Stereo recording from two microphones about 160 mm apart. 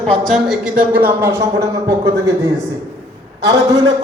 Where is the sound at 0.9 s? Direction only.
15° right (ahead or behind).